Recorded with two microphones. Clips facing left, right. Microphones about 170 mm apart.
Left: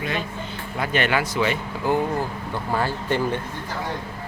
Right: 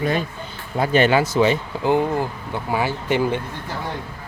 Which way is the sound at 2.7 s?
15° right (ahead or behind).